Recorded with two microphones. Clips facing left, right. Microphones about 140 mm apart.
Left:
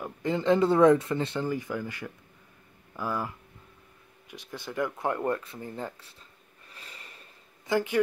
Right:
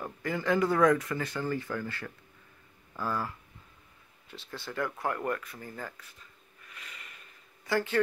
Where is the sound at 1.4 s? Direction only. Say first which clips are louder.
Left 2 dB; 15° left (ahead or behind).